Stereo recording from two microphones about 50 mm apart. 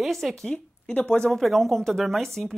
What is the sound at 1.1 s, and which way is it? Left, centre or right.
Speech, centre.